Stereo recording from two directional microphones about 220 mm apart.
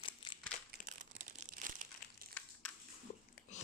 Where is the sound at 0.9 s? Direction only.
35° right (ahead or behind).